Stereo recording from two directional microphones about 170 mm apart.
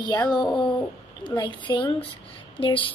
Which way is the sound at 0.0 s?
25° left (ahead or behind).